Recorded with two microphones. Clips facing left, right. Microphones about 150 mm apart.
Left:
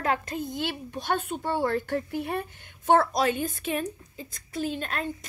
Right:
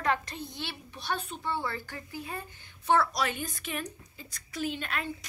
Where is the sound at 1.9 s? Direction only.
65° left (ahead or behind).